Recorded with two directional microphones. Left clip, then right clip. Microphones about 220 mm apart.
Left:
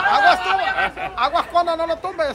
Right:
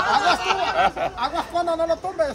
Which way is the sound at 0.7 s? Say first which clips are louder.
Right 1 dB; 40° right (ahead or behind).